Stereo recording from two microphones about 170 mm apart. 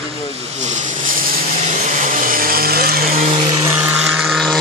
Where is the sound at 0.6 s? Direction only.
50° right (ahead or behind).